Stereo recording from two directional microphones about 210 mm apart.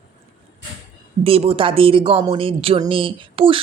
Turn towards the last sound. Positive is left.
turn(degrees=-25)  # may be behind; listen again after turning